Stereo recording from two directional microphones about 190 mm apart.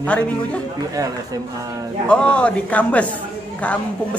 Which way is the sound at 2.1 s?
5° left (ahead or behind).